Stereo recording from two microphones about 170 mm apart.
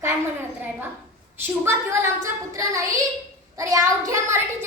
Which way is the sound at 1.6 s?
15° right (ahead or behind).